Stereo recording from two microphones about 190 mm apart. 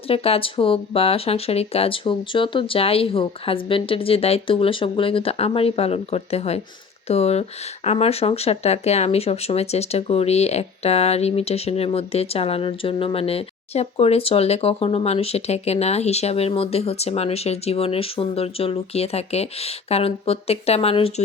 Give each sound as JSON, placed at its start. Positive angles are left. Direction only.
{"t": 0.1, "sound": "speech", "side_deg": 30}